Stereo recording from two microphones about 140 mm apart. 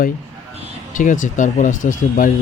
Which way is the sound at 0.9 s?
65° left (ahead or behind).